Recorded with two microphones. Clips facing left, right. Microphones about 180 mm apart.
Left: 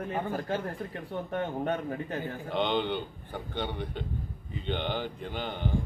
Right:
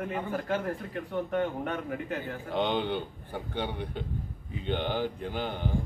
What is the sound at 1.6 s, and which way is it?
Speech, 35° left (ahead or behind).